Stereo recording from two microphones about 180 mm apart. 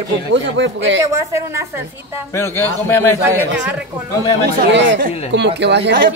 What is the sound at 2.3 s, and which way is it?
Speech, 15° left (ahead or behind).